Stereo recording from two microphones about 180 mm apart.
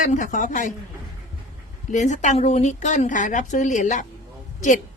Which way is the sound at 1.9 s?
40° left (ahead or behind).